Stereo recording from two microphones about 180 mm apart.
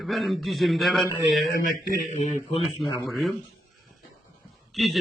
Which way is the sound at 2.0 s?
40° left (ahead or behind).